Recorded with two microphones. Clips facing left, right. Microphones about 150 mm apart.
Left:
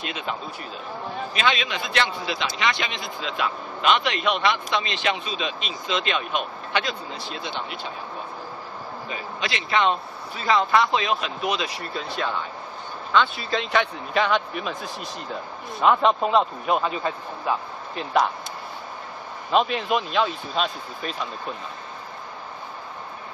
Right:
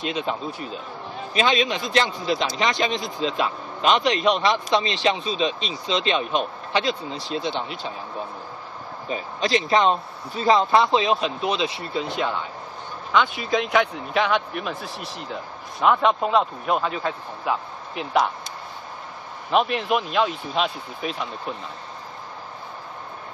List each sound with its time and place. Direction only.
0.0 s speech: 30° right (ahead or behind)
9.1 s speech: 40° right (ahead or behind); by 18.3 s centre (ahead or behind)
19.5 s speech: centre (ahead or behind)